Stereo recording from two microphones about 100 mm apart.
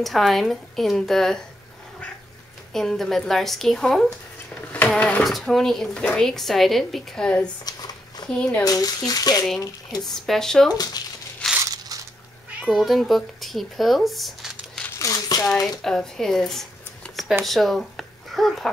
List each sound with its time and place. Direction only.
0.0 s a woman's voice: centre (ahead or behind)
2.7 s a woman's voice: 5° left (ahead or behind)
7.6 s a sound: 40° left (ahead or behind)
8.4 s speech: 15° left (ahead or behind)
8.6 s speech: 40° left (ahead or behind)
10.0 s a woman's voice: 5° left (ahead or behind)
11.6 s biting: 35° right (ahead or behind)
12.6 s speech: centre (ahead or behind)
15.0 s a sound: 35° left (ahead or behind)
15.8 s speech: 5° left (ahead or behind)